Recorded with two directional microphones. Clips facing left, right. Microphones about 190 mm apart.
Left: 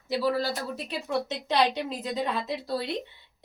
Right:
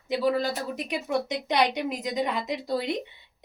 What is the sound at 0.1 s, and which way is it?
A woman's voice, 15° right (ahead or behind).